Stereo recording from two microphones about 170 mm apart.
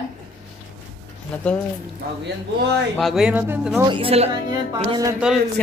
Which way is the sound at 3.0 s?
Centre (ahead or behind).